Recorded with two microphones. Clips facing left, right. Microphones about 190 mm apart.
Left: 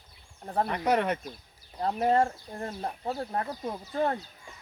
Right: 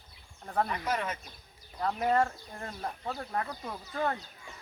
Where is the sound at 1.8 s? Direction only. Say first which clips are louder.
Left 3 dB; 30° left (ahead or behind).